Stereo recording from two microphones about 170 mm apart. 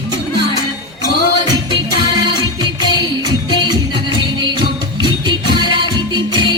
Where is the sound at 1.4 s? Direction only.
25° right (ahead or behind).